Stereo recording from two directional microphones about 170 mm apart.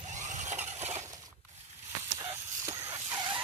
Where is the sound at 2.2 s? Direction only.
15° right (ahead or behind).